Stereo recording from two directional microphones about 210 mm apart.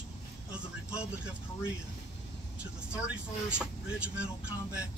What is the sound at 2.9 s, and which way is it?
Speech, 5° right (ahead or behind).